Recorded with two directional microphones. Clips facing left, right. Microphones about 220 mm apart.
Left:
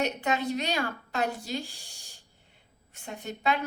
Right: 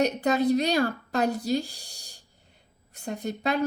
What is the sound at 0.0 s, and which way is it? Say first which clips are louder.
A woman's voice: right 6 dB; 40° right (ahead or behind).